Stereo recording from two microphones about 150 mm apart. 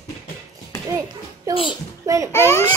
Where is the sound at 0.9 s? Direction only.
20° right (ahead or behind).